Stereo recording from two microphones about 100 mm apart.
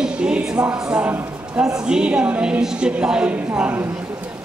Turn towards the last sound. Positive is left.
turn(degrees=-15)  # may be behind; listen again after turning